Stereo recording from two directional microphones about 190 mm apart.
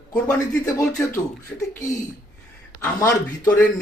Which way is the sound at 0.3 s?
15° left (ahead or behind).